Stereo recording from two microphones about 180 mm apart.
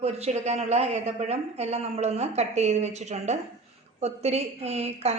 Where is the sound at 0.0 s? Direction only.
35° right (ahead or behind).